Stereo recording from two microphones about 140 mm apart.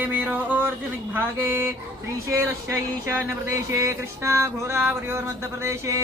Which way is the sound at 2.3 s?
20° right (ahead or behind).